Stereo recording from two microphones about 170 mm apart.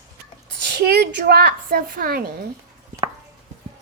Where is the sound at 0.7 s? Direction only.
75° right (ahead or behind).